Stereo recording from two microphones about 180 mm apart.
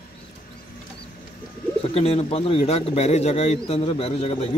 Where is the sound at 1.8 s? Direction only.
35° left (ahead or behind).